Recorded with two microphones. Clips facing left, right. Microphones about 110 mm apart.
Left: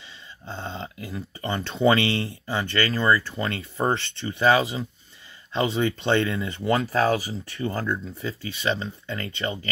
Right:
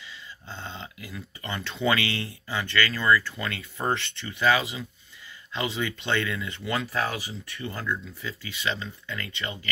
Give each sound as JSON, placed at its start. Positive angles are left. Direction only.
{"t": 0.5, "sound": "dog", "side_deg": 35}
{"t": 1.8, "sound": "speech", "side_deg": 35}